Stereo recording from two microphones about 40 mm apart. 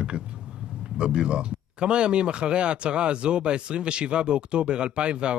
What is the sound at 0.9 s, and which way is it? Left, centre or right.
Speech, right.